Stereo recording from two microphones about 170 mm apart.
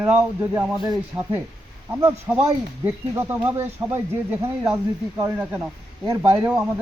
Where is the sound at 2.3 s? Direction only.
20° right (ahead or behind).